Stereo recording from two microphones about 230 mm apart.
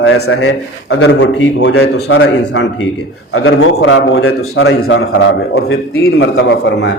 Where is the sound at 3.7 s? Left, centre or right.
Left.